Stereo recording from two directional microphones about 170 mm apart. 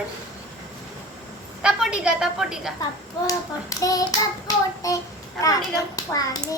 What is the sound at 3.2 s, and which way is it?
Speech, 20° left (ahead or behind).